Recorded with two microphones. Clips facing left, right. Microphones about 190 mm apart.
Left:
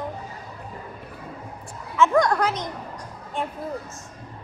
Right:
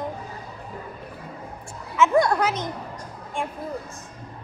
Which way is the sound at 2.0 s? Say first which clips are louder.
Even; 10° right (ahead or behind).